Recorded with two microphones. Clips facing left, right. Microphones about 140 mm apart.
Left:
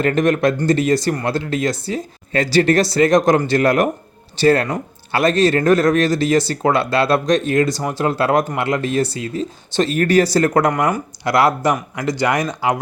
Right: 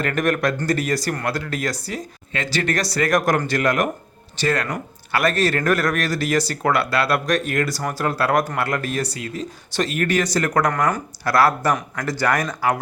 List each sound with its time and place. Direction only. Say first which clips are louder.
0.0 s speech: left 5 dB; 25° left (ahead or behind)
10.7 s speech: left 3 dB; 15° left (ahead or behind)